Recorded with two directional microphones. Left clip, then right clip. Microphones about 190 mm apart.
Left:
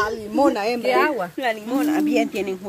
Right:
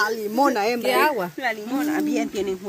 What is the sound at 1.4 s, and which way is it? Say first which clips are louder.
Speech: left 3 dB; 25° left (ahead or behind).